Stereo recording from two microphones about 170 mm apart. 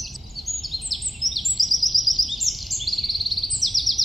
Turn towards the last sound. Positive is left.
turn(degrees=0)  # may be behind; listen again after turning